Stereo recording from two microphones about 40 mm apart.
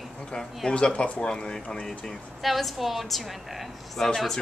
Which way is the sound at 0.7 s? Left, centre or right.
Left.